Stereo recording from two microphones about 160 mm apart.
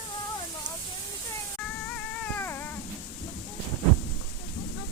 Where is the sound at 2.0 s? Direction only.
10° left (ahead or behind).